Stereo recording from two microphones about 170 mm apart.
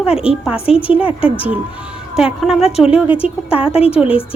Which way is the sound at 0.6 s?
35° left (ahead or behind).